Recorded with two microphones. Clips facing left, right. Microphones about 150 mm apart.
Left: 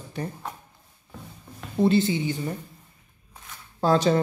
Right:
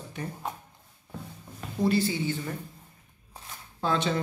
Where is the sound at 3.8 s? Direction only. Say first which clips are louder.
Left 7 dB; 40° left (ahead or behind).